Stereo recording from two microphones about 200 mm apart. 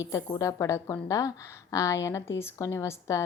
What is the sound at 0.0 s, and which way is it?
A woman's voice, 15° left (ahead or behind).